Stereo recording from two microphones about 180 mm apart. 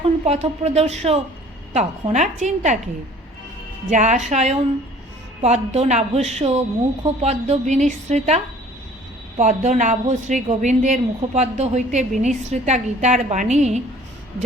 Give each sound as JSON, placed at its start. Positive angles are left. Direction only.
{"t": 0.3, "sound": "a woman's voice", "side_deg": -35}
{"t": 3.8, "sound": "a woman's voice", "side_deg": -45}
{"t": 9.4, "sound": "a woman's voice", "side_deg": -40}